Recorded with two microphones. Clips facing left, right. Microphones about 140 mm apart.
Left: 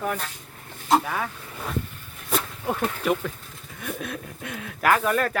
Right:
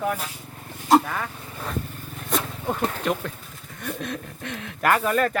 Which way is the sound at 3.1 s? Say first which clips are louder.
Left 1 dB; centre (ahead or behind).